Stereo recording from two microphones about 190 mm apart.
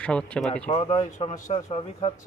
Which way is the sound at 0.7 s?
30° left (ahead or behind).